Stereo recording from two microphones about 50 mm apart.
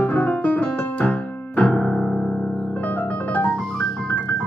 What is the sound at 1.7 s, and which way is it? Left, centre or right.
Piano, centre.